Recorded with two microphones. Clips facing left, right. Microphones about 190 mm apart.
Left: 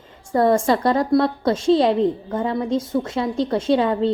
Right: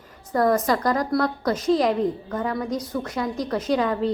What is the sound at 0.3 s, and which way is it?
A woman's voice, 25° left (ahead or behind).